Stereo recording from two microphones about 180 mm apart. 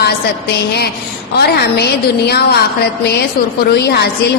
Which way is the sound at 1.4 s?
65° left (ahead or behind).